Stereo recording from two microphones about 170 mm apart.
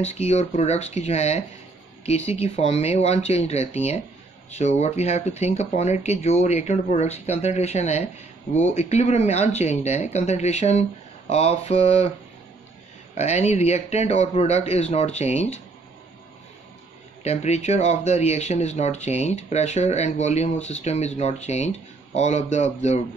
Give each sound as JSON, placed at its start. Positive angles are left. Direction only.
{"t": 0.0, "sound": "speech", "side_deg": 40}
{"t": 13.1, "sound": "speech", "side_deg": 40}
{"t": 17.2, "sound": "speech", "side_deg": 40}